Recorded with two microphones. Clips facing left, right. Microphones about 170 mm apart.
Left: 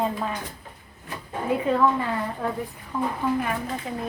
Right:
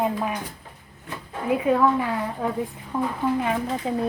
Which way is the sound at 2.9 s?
25° right (ahead or behind).